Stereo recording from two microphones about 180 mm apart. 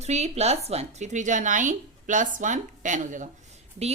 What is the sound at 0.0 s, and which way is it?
A woman's voice, 35° right (ahead or behind).